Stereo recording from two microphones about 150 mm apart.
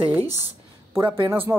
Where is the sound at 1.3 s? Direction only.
15° right (ahead or behind).